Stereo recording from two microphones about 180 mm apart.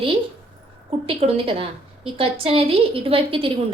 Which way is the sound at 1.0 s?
30° right (ahead or behind).